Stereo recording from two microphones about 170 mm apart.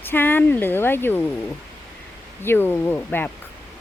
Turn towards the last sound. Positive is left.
turn(degrees=10)  # may be behind; listen again after turning